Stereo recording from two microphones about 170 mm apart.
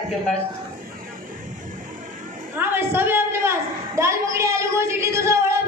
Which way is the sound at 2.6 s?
10° right (ahead or behind).